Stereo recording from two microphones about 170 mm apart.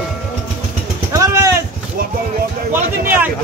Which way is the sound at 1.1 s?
20° right (ahead or behind).